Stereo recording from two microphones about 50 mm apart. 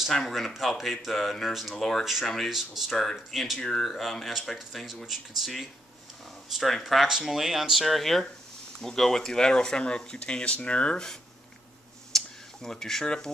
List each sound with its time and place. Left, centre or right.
0.1 s speech: centre
1.8 s speech: centre
2.5 s speech: centre
3.0 s speech: centre
6.5 s speech: centre; by 11.1 s left
12.1 s a sound: centre
12.6 s speech: centre